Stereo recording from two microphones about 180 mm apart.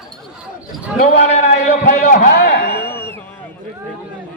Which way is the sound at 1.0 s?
40° left (ahead or behind).